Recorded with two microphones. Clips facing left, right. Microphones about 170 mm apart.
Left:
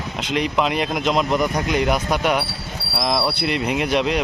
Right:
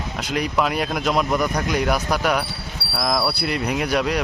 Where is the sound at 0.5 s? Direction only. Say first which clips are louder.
Right 1 dB; 20° left (ahead or behind).